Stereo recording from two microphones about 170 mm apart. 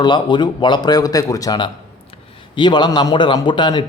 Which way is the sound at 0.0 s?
25° left (ahead or behind).